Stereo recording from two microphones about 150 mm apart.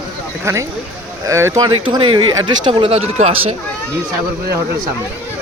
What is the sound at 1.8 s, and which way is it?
Speech, 35° right (ahead or behind).